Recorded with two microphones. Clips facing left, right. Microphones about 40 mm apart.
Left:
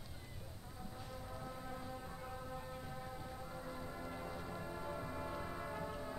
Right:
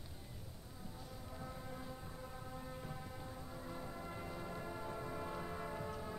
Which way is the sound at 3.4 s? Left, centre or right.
Centre.